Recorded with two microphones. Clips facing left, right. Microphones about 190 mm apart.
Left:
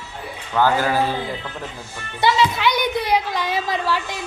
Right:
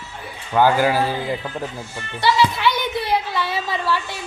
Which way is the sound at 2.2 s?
20° left (ahead or behind).